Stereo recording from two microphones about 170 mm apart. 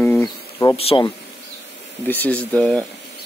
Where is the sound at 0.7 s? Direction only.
35° left (ahead or behind).